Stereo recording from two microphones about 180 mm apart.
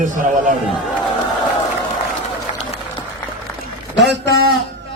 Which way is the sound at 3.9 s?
75° right (ahead or behind).